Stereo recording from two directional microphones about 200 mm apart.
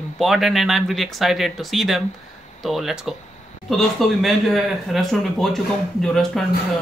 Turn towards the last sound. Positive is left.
turn(degrees=0)  # may be behind; listen again after turning